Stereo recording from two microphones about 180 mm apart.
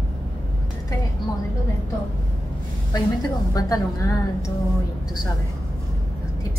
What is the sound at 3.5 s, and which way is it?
Speech, 20° left (ahead or behind).